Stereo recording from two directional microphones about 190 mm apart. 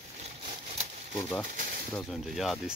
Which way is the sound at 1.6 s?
50° right (ahead or behind).